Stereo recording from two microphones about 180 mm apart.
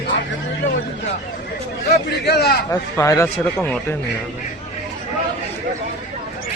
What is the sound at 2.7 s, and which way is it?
A man's voice, 15° left (ahead or behind).